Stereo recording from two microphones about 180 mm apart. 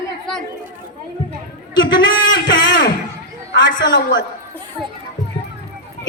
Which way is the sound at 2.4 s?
90° left.